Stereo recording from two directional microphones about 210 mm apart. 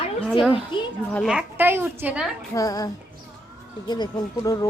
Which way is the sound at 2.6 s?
15° left (ahead or behind).